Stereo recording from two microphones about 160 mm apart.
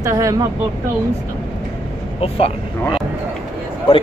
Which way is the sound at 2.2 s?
40° left (ahead or behind).